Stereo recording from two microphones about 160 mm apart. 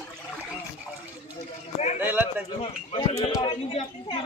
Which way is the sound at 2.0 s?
10° right (ahead or behind).